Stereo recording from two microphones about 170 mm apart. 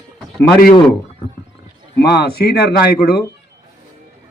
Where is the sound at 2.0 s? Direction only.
70° left (ahead or behind).